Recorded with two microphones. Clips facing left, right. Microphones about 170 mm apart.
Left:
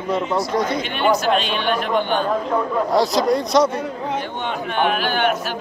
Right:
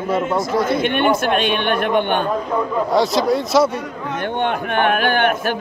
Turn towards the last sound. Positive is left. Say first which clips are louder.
# right 3 dB
turn(degrees=-55)  # may be behind; listen again after turning